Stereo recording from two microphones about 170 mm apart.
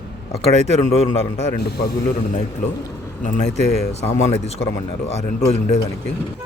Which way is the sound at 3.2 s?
45° left (ahead or behind).